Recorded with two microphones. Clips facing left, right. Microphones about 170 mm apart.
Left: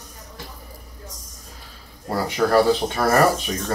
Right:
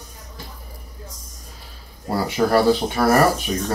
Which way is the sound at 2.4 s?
15° right (ahead or behind).